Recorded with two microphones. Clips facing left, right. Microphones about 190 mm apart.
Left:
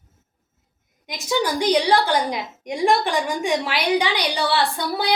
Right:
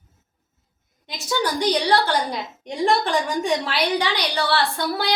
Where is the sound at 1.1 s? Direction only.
10° left (ahead or behind).